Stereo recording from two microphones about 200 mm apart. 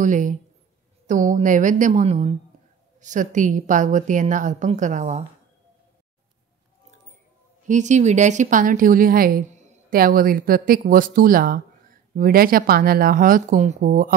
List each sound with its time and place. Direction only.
0.0 s a woman's voice: 40° right (ahead or behind)
7.6 s a woman's voice: 35° right (ahead or behind)